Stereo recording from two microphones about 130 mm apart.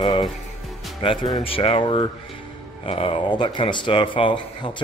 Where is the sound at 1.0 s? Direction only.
40° left (ahead or behind).